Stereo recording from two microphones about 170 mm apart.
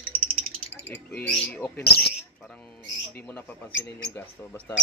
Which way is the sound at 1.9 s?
70° left (ahead or behind).